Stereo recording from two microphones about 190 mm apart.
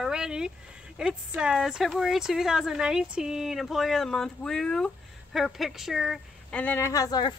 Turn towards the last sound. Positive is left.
turn(degrees=20)  # may be behind; listen again after turning